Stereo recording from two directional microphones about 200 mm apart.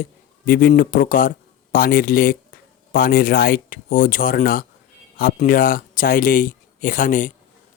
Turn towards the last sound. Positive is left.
turn(degrees=40)  # may be behind; listen again after turning